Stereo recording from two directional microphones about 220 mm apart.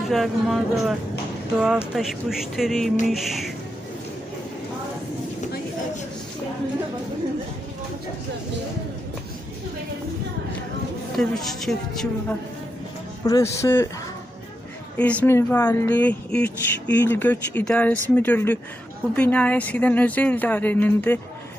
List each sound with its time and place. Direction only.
0.1 s speech: centre (ahead or behind)
11.2 s speech: centre (ahead or behind)
13.2 s speech: 15° left (ahead or behind)
14.9 s speech: 5° left (ahead or behind)